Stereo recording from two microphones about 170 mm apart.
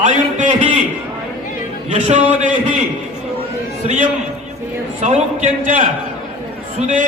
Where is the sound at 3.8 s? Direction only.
45° right (ahead or behind).